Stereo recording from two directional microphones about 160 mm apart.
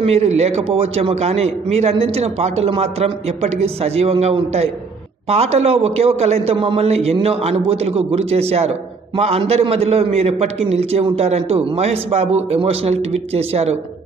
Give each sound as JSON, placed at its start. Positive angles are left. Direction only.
{"t": 0.0, "sound": "a man's voice", "side_deg": -40}